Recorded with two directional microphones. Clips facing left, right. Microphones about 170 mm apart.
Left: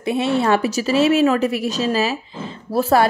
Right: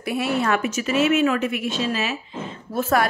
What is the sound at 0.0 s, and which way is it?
A woman's voice, 25° left (ahead or behind).